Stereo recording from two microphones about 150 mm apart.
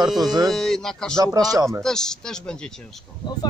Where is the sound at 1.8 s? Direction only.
5° left (ahead or behind).